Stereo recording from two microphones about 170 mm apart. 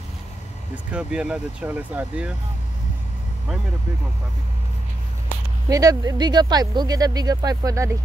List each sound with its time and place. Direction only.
0.9 s speech: 5° right (ahead or behind)
5.7 s speech: 20° right (ahead or behind)